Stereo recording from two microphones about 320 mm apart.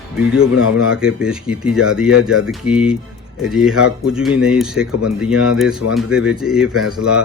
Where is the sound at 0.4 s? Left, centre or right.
Left.